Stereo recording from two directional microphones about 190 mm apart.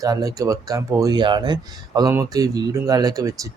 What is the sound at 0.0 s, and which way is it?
Speech, 20° right (ahead or behind).